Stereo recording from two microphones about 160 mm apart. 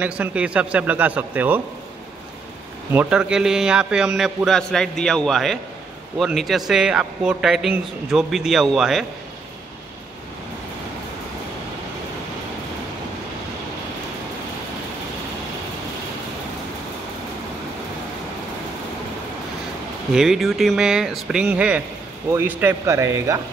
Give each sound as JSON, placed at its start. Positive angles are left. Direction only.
{"t": 0.0, "sound": "speech", "side_deg": -10}
{"t": 2.9, "sound": "a man's voice", "side_deg": -10}
{"t": 20.2, "sound": "a man's voice", "side_deg": 0}